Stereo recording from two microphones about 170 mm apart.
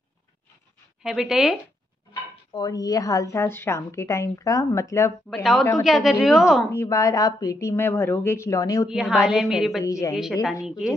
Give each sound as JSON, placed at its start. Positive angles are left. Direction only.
{"t": 1.0, "sound": "a woman's voice", "side_deg": 0}
{"t": 2.5, "sound": "a woman's voice", "side_deg": 20}
{"t": 5.3, "sound": "a woman's voice", "side_deg": 0}
{"t": 6.7, "sound": "speech", "side_deg": 15}
{"t": 8.8, "sound": "a woman's voice", "side_deg": -5}
{"t": 9.8, "sound": "a woman's voice", "side_deg": 20}
{"t": 10.1, "sound": "a woman's voice", "side_deg": 0}